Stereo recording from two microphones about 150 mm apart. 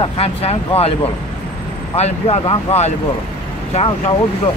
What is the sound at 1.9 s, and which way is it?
Speech, 45° left (ahead or behind).